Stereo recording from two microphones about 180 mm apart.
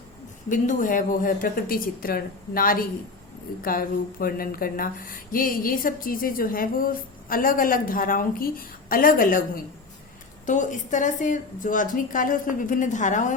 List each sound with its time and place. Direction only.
0.4 s speech: 45° left (ahead or behind)
10.4 s speech: 45° left (ahead or behind)